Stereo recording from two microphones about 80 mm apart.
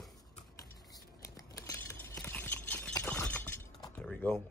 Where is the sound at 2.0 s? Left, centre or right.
Left.